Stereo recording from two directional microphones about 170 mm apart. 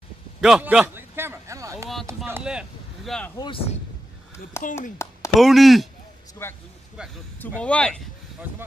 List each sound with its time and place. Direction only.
0.4 s a sound: 5° right (ahead or behind)
2.2 s speech: 10° right (ahead or behind)
3.3 s speech: 30° left (ahead or behind)
4.6 s speech: 15° left (ahead or behind)
5.0 s a sound: 15° left (ahead or behind)
5.4 s speech: centre (ahead or behind)
6.4 s speech: 15° left (ahead or behind)
7.0 s speech: 5° right (ahead or behind)
7.3 s speech: 10° left (ahead or behind)